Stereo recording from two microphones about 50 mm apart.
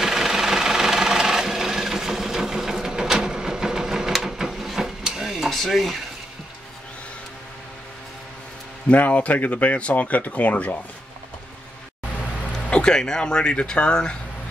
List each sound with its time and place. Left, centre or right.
0.0 s sewing machine: centre
5.5 s speech: centre
8.8 s speech: left
12.6 s speech: centre